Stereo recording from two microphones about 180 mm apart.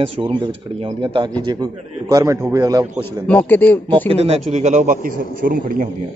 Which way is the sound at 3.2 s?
10° left (ahead or behind).